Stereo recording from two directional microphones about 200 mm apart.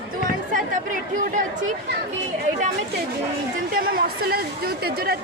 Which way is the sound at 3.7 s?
45° right (ahead or behind).